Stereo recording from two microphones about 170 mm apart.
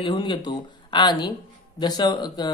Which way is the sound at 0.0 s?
30° left (ahead or behind).